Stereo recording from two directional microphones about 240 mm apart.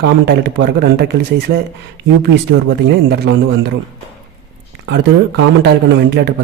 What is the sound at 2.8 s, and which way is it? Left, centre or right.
Speech, right.